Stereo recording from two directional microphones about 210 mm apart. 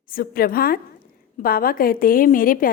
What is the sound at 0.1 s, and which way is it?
A woman's voice, 45° left (ahead or behind).